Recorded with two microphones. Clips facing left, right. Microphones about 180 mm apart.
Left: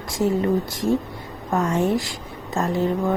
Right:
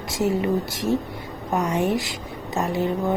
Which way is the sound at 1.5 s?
20° right (ahead or behind).